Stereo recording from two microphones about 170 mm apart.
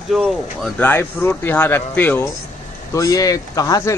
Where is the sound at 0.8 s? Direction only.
15° left (ahead or behind).